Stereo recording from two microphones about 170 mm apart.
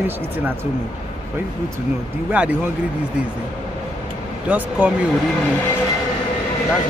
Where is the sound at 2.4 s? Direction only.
10° right (ahead or behind).